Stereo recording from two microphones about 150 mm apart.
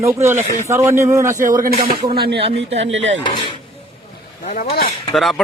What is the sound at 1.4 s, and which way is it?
Speech, 65° right (ahead or behind).